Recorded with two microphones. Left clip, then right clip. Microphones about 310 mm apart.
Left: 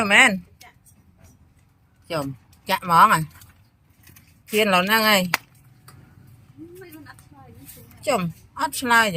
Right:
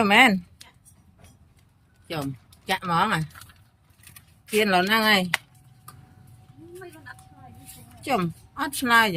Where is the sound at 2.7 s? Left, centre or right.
Centre.